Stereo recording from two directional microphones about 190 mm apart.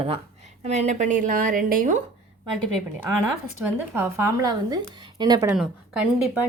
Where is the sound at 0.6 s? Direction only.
35° right (ahead or behind).